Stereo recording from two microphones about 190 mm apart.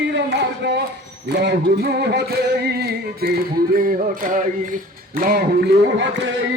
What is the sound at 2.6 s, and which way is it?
Music, 55° right (ahead or behind).